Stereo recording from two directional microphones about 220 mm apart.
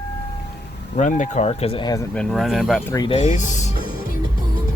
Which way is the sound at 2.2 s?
Centre (ahead or behind).